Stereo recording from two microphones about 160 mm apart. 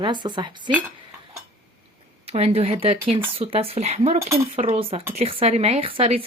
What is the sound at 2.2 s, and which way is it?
Speech, 40° right (ahead or behind).